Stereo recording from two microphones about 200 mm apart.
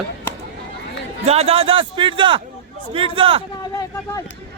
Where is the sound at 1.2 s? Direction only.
30° right (ahead or behind).